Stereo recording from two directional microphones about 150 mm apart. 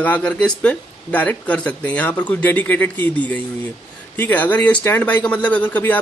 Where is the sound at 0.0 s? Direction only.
10° left (ahead or behind).